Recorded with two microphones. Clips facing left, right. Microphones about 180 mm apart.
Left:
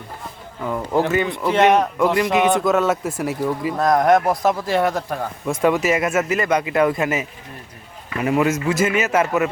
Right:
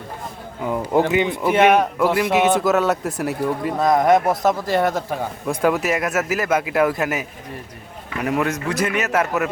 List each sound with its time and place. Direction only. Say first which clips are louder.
0.6 s a man's voice: right 1 dB; 15° right (ahead or behind); by 9.5 s centre (ahead or behind)